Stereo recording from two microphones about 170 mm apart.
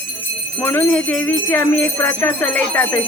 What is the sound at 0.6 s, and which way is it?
Speech, 10° left (ahead or behind).